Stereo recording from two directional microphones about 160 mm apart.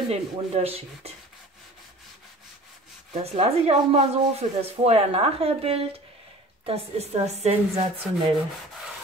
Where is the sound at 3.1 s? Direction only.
40° right (ahead or behind).